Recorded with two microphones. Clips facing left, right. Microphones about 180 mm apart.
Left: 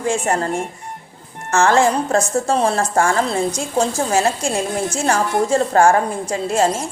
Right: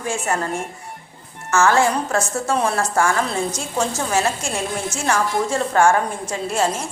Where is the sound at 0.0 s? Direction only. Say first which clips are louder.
Left 4 dB; 30° left (ahead or behind).